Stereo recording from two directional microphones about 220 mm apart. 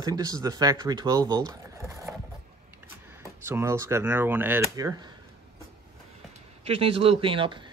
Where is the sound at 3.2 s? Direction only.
10° right (ahead or behind).